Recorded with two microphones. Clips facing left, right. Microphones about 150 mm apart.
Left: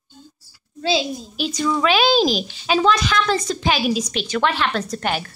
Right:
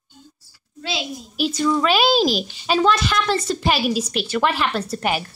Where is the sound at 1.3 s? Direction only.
5° right (ahead or behind).